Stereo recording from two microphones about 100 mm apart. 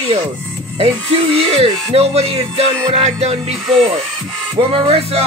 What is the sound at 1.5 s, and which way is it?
Speech, 80° right.